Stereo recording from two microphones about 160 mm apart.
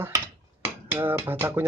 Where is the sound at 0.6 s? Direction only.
15° right (ahead or behind).